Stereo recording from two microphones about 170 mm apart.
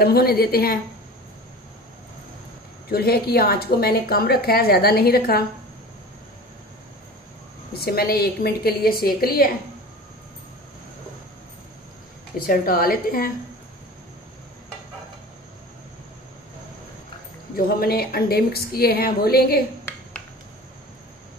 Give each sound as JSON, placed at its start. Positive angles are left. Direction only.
{"t": 0.0, "sound": "a woman's voice", "side_deg": 65}
{"t": 2.9, "sound": "a woman's voice", "side_deg": 65}
{"t": 7.8, "sound": "a woman's voice", "side_deg": 65}
{"t": 12.4, "sound": "a woman's voice", "side_deg": 60}
{"t": 17.6, "sound": "a woman's voice", "side_deg": 60}